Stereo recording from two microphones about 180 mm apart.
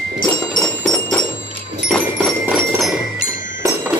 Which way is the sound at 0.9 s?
10° left (ahead or behind).